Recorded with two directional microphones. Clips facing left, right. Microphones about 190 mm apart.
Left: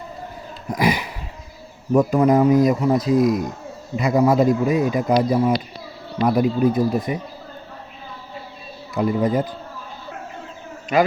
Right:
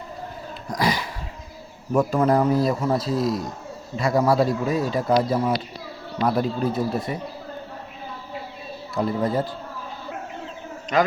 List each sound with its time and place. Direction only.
0.8 s a sound: 20° left (ahead or behind)
1.9 s speech: 20° left (ahead or behind)
9.0 s speech: 15° left (ahead or behind)
10.9 s speech: 10° left (ahead or behind)